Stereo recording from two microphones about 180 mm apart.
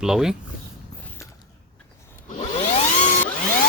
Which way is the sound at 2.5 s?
35° left (ahead or behind).